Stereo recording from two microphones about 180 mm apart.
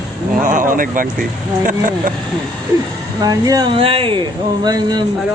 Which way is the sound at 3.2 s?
20° right (ahead or behind).